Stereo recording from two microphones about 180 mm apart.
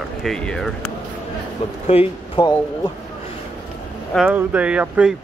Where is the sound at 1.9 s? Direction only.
30° left (ahead or behind).